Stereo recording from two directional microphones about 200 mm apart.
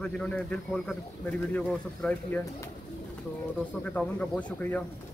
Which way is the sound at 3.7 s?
5° left (ahead or behind).